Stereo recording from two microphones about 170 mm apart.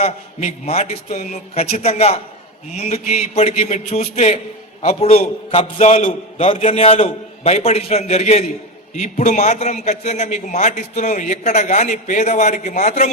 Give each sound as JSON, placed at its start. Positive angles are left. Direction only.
{"t": 0.0, "sound": "a man's voice", "side_deg": 40}